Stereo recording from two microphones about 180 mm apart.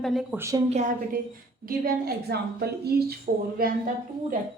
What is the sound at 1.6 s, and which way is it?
A woman's voice, 55° right (ahead or behind).